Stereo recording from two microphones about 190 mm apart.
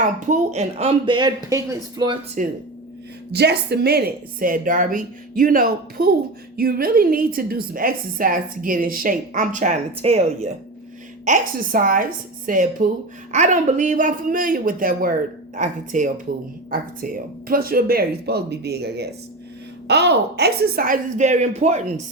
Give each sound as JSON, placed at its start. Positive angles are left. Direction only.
{"t": 0.0, "sound": "a woman's voice", "side_deg": -40}
{"t": 2.4, "sound": "a woman's voice", "side_deg": -40}
{"t": 3.3, "sound": "a woman's voice", "side_deg": -60}
{"t": 11.3, "sound": "a woman's voice", "side_deg": -45}